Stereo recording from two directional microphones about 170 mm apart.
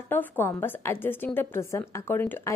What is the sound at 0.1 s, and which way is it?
A woman's voice, 10° left (ahead or behind).